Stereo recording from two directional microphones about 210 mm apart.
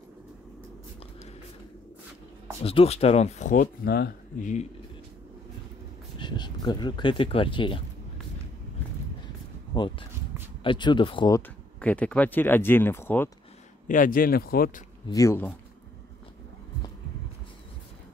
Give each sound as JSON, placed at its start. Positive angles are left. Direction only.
{"t": 2.6, "sound": "speech", "side_deg": 25}
{"t": 6.1, "sound": "speech", "side_deg": 20}
{"t": 9.8, "sound": "speech", "side_deg": 25}
{"t": 13.8, "sound": "speech", "side_deg": 40}
{"t": 15.0, "sound": "speech", "side_deg": 15}